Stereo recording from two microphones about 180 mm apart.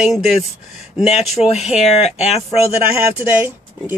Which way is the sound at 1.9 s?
35° left (ahead or behind).